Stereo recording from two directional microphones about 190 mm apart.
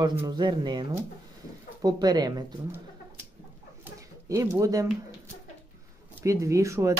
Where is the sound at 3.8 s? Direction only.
15° right (ahead or behind).